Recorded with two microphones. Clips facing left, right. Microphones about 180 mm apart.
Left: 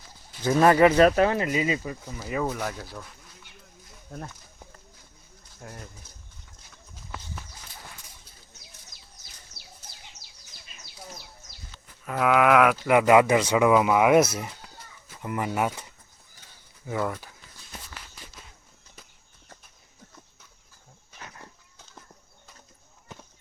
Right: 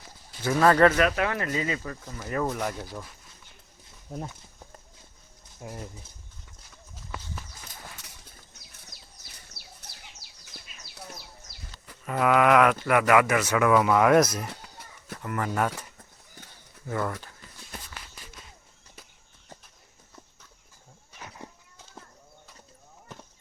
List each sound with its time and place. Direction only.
0.4 s speech: 20° left (ahead or behind)
0.9 s speech: 35° left (ahead or behind)
1.4 s speech: 15° left (ahead or behind); by 2.8 s centre (ahead or behind)
5.5 s speech: 10° right (ahead or behind)
12.0 s a sound: centre (ahead or behind)
12.9 s speech: 20° left (ahead or behind)
13.7 s speech: 15° left (ahead or behind)
15.2 s speech: 15° left (ahead or behind)
16.8 s speech: 10° left (ahead or behind)
21.2 s livestock: 5° right (ahead or behind)